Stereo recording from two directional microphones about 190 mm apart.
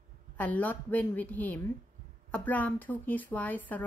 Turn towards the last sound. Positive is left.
turn(degrees=10)  # may be behind; listen again after turning